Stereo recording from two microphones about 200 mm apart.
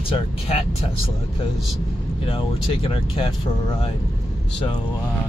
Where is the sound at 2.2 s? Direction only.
25° left (ahead or behind).